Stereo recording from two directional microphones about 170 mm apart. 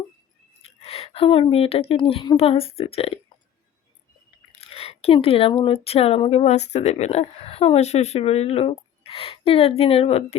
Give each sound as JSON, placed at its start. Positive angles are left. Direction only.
{"t": 0.6, "sound": "a woman's voice", "side_deg": 35}
{"t": 4.6, "sound": "a sound", "side_deg": 35}
{"t": 5.5, "sound": "speech", "side_deg": 30}